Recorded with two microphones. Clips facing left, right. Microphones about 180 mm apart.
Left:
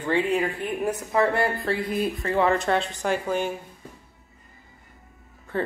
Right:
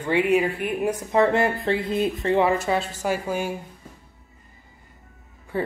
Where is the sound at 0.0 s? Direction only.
10° right (ahead or behind).